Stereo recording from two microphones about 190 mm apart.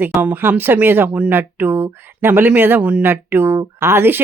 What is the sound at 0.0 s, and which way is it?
Speech, 10° right (ahead or behind).